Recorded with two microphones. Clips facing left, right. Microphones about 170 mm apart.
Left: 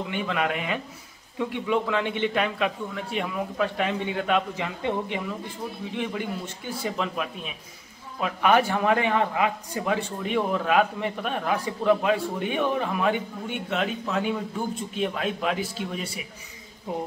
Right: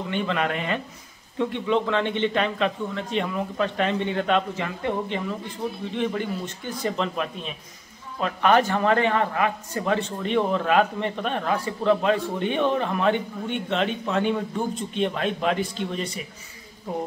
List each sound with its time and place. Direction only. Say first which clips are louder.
0.1 s a man's voice: right 3 dB; 5° left (ahead or behind)